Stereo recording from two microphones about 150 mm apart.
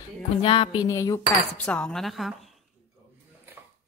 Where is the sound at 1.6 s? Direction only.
5° left (ahead or behind).